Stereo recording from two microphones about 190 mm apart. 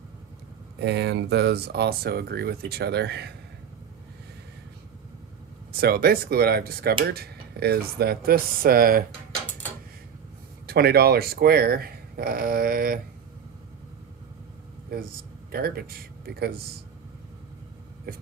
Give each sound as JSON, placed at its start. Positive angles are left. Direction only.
{"t": 0.7, "sound": "speech", "side_deg": -65}
{"t": 5.7, "sound": "speech", "side_deg": -55}
{"t": 10.7, "sound": "speech", "side_deg": -55}
{"t": 14.9, "sound": "speech", "side_deg": -55}